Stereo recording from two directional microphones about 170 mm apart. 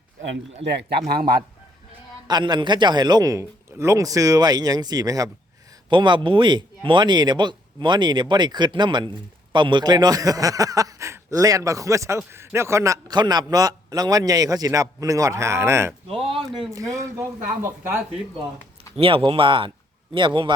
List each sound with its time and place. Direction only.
0.7 s a man's voice: 80° right; by 1.5 s 60° right (ahead or behind)
2.2 s speech: 25° right (ahead or behind)
16.2 s speech: 35° right (ahead or behind); by 18.0 s 15° right (ahead or behind)
18.9 s speech: 30° right (ahead or behind)